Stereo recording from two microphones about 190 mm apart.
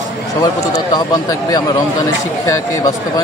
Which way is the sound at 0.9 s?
20° left (ahead or behind).